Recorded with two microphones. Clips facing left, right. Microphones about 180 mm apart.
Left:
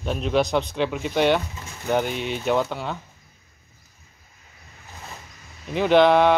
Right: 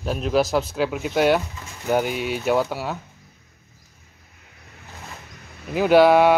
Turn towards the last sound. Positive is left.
turn(degrees=-5)  # may be behind; listen again after turning